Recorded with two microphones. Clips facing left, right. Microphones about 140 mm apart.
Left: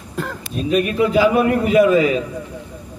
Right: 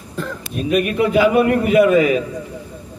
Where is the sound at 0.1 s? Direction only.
90° left.